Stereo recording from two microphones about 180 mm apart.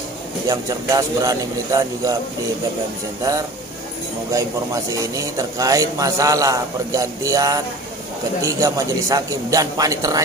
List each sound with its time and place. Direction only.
0.5 s a man's voice: 20° right (ahead or behind)
5.0 s a man's voice: 20° right (ahead or behind)